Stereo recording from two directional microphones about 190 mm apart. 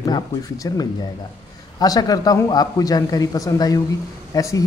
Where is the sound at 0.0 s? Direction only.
20° left (ahead or behind).